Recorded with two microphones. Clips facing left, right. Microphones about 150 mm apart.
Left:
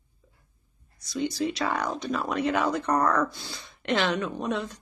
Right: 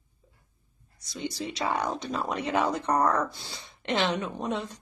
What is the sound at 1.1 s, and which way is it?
Speech, 25° right (ahead or behind).